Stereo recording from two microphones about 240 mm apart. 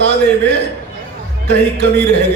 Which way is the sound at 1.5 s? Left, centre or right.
Right.